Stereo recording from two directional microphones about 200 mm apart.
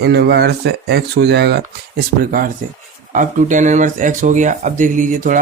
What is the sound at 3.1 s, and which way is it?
Speech, 40° right (ahead or behind).